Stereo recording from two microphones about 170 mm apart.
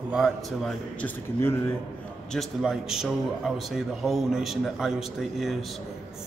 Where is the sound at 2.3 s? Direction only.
5° right (ahead or behind).